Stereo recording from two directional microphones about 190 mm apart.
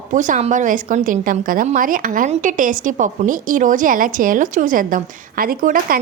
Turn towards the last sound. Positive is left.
turn(degrees=-45)  # may be behind; listen again after turning